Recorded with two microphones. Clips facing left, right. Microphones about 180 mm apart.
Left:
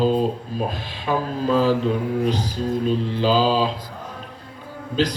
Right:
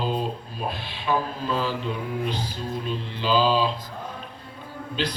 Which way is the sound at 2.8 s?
40° left (ahead or behind).